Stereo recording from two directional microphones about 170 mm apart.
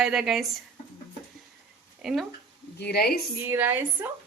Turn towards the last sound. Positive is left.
turn(degrees=-10)  # may be behind; listen again after turning